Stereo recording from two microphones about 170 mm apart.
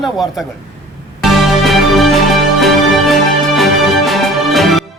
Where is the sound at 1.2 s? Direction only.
Centre (ahead or behind).